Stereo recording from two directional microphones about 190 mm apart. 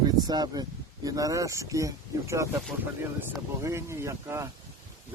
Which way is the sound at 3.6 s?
15° right (ahead or behind).